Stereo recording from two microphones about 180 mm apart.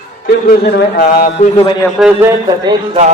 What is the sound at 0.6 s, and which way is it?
A man's voice, 65° left (ahead or behind).